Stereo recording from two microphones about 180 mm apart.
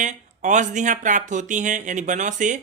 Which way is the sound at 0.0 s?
45° right (ahead or behind).